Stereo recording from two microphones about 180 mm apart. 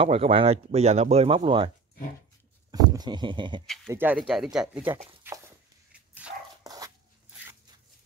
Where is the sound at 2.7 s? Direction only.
20° right (ahead or behind).